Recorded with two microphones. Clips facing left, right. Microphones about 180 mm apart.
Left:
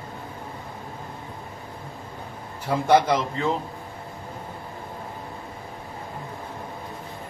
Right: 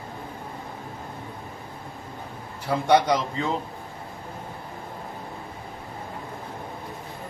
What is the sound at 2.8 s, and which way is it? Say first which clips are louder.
Speech: left 1 dB; 5° left (ahead or behind).